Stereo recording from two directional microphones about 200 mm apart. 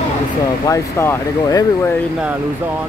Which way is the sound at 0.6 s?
15° left (ahead or behind).